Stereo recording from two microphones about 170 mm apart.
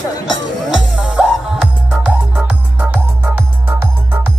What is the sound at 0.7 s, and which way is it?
Music, 5° right (ahead or behind).